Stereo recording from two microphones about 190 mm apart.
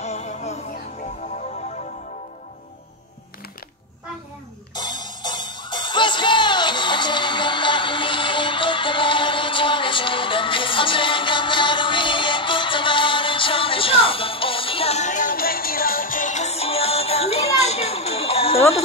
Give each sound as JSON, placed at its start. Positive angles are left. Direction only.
{"t": 0.0, "sound": "music", "side_deg": 35}
{"t": 4.7, "sound": "music", "side_deg": 25}